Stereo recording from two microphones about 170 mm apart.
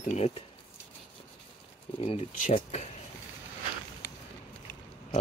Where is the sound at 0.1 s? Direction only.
40° left (ahead or behind).